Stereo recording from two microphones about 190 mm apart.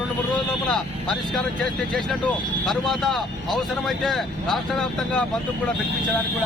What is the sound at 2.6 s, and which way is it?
Speech, centre (ahead or behind).